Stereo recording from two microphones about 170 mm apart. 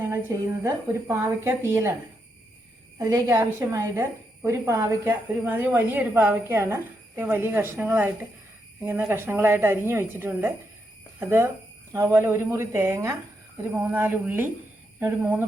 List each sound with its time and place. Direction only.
0.1 s a woman's voice: 15° right (ahead or behind)
3.0 s a woman's voice: 20° right (ahead or behind)